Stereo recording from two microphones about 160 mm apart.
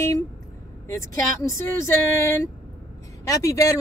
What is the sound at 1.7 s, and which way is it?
Speech, 15° left (ahead or behind).